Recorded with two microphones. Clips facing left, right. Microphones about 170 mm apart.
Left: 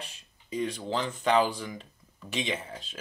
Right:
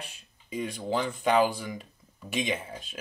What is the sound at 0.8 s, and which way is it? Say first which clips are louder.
Speech: right 3 dB; 10° right (ahead or behind).